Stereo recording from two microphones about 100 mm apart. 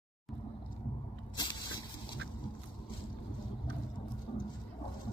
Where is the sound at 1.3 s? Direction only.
50° left (ahead or behind).